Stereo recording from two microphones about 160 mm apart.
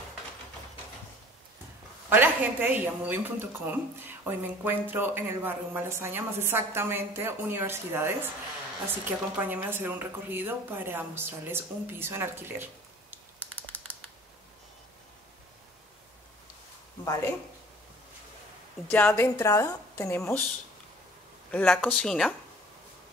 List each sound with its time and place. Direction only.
2.0 s speech: 15° right (ahead or behind)
17.0 s speech: 20° left (ahead or behind)
18.9 s a woman's voice: 15° left (ahead or behind)
21.5 s speech: 10° left (ahead or behind)